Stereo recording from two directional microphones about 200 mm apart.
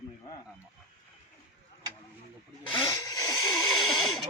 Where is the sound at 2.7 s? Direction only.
15° left (ahead or behind).